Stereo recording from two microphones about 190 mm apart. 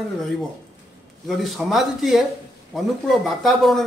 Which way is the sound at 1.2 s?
Centre (ahead or behind).